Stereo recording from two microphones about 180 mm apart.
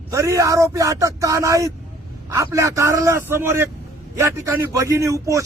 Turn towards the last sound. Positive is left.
turn(degrees=-15)  # may be behind; listen again after turning